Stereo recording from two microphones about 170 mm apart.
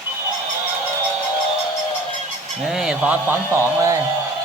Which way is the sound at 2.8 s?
5° right (ahead or behind).